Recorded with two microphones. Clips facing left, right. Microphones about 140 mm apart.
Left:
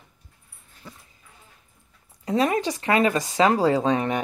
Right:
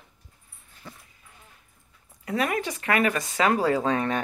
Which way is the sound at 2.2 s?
25° left (ahead or behind).